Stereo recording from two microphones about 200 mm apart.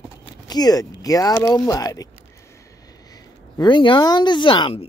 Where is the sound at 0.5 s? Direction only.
20° left (ahead or behind).